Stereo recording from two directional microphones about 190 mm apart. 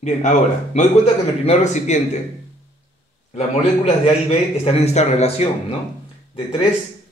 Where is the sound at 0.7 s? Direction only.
35° left (ahead or behind).